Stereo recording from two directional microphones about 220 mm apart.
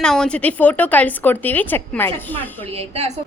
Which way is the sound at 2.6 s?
25° right (ahead or behind).